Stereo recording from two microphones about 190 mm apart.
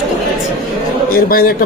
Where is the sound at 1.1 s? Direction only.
50° left (ahead or behind).